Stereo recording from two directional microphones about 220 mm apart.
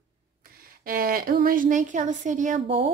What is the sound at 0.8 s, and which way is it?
Speech, 40° right (ahead or behind).